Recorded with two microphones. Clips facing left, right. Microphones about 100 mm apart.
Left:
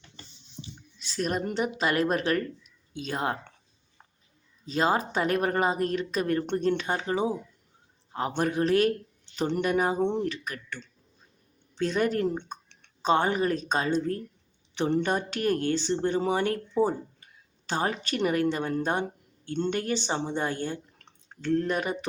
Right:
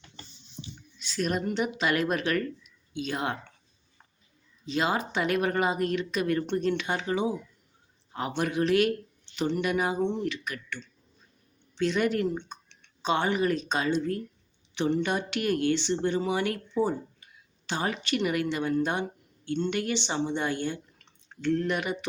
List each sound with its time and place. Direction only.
0.6 s speech: 35° left (ahead or behind)
4.6 s speech: 40° left (ahead or behind)